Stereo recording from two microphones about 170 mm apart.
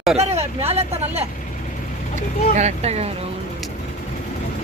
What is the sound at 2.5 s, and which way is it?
Speech, 40° right (ahead or behind).